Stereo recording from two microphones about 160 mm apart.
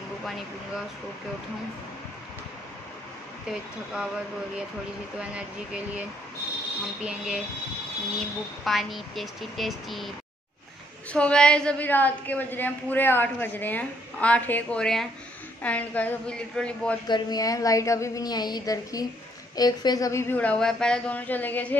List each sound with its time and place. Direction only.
3.4 s speech: 5° right (ahead or behind)
5.3 s speech: 5° right (ahead or behind)
8.6 s a woman's voice: centre (ahead or behind)
17.1 s a woman's voice: 25° left (ahead or behind)